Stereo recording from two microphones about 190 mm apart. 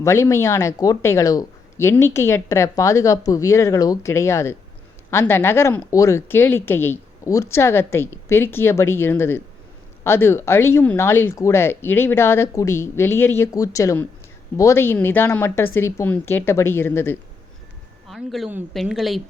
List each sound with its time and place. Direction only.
0.0 s speech: 15° left (ahead or behind)
18.1 s a woman's voice: centre (ahead or behind)